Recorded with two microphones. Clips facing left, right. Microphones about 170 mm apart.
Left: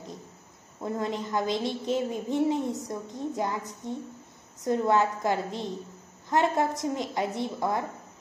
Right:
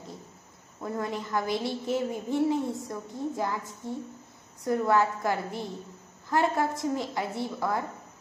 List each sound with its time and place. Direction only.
0.7 s a child's voice: 20° left (ahead or behind)